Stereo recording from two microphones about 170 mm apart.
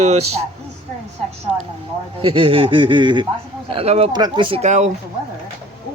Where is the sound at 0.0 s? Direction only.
40° right (ahead or behind).